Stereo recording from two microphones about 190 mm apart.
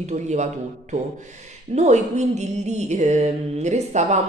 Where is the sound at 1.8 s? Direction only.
35° right (ahead or behind).